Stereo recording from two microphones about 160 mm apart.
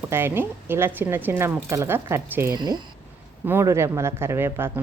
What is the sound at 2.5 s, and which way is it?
A woman's voice, 25° right (ahead or behind).